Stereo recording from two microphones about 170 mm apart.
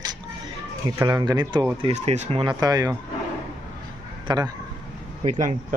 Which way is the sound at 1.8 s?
40° right (ahead or behind).